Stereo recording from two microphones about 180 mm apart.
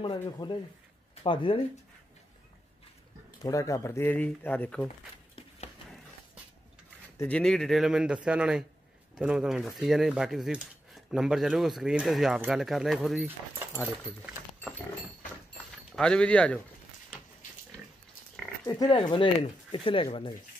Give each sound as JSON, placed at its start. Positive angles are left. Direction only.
{"t": 0.0, "sound": "speech", "side_deg": 25}
{"t": 3.4, "sound": "speech", "side_deg": 15}
{"t": 7.2, "sound": "speech", "side_deg": 5}
{"t": 16.0, "sound": "speech", "side_deg": 5}
{"t": 18.7, "sound": "speech", "side_deg": 20}